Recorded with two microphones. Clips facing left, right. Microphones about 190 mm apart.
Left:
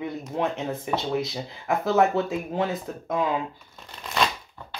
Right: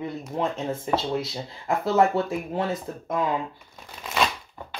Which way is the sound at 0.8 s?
20° left (ahead or behind).